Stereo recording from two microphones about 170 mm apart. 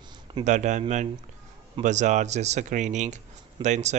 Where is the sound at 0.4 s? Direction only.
45° right (ahead or behind).